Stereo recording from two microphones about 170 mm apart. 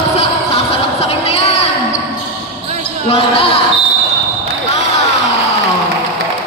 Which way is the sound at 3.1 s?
35° left (ahead or behind).